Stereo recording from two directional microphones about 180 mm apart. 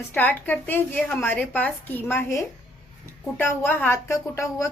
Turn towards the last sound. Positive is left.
turn(degrees=15)  # may be behind; listen again after turning